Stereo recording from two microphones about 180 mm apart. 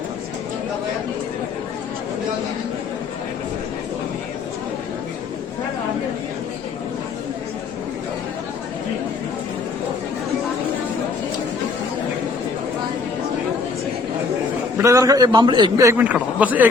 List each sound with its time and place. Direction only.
14.8 s a man's voice: 15° right (ahead or behind)